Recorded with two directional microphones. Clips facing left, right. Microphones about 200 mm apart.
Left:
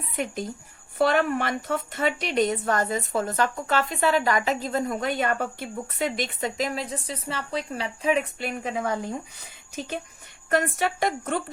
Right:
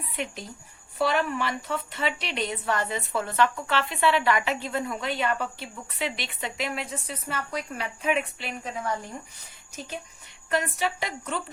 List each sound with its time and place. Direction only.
0.9 s a woman's voice: 50° left (ahead or behind); by 8.2 s 30° left (ahead or behind)
8.4 s speech: 55° left (ahead or behind)
10.5 s a woman's voice: 50° left (ahead or behind)